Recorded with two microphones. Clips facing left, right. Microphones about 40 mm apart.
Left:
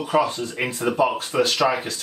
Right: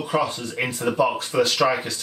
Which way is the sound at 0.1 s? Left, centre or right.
Centre.